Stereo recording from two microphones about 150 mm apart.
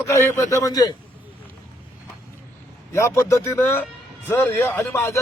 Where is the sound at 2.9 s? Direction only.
20° left (ahead or behind).